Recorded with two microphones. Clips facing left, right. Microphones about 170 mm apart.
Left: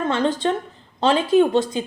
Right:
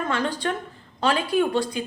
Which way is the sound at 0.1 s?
25° left (ahead or behind).